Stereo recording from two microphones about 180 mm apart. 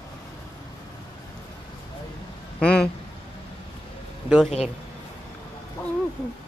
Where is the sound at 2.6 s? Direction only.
5° left (ahead or behind).